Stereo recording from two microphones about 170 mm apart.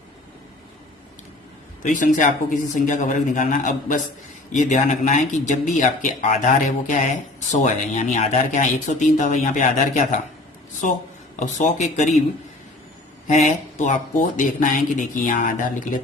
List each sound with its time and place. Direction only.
1.8 s speech: 50° left (ahead or behind)
11.3 s speech: 45° left (ahead or behind)
13.2 s speech: 45° left (ahead or behind)